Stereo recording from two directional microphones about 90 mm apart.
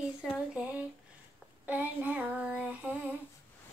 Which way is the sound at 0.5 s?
15° right (ahead or behind).